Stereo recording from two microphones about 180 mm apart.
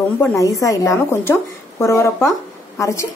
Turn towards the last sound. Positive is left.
turn(degrees=15)  # may be behind; listen again after turning